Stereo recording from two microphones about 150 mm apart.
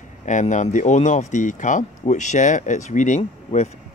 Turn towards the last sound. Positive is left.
turn(degrees=45)  # may be behind; listen again after turning